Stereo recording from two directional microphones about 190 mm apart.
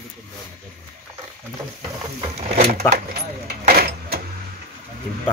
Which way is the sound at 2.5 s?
40° right (ahead or behind).